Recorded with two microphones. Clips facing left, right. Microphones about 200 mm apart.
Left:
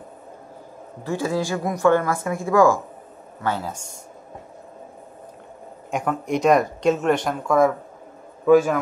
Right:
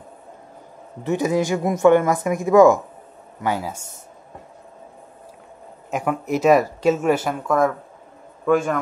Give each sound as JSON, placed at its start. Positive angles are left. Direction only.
{"t": 1.0, "sound": "speech", "side_deg": -20}
{"t": 5.9, "sound": "speech", "side_deg": -5}